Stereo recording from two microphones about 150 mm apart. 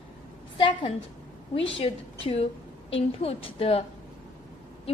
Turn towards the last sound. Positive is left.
turn(degrees=40)  # may be behind; listen again after turning